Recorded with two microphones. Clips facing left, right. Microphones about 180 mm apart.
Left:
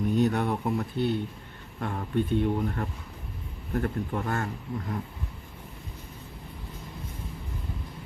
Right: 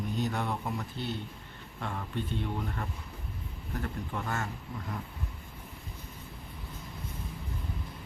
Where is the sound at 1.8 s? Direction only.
45° left (ahead or behind).